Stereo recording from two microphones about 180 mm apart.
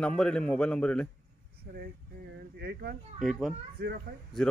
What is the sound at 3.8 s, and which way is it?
Speech, 60° right (ahead or behind).